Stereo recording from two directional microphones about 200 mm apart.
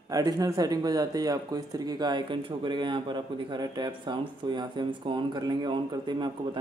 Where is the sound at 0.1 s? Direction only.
20° right (ahead or behind).